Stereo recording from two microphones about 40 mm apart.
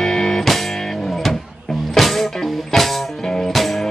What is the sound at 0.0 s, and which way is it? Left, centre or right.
Music, centre.